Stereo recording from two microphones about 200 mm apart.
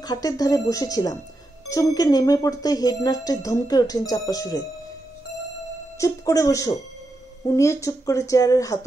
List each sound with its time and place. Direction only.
0.0 s speech: 20° left (ahead or behind)
5.9 s speech: 15° left (ahead or behind)